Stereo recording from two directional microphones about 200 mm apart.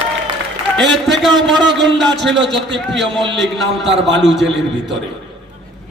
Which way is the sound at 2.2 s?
65° right (ahead or behind).